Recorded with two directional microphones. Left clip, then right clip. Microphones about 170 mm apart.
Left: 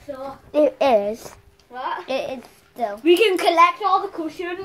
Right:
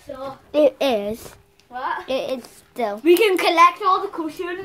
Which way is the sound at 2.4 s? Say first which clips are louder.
Right 1 dB; 30° right (ahead or behind).